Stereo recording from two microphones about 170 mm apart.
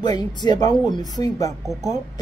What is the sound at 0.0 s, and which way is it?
Speech, 25° left (ahead or behind).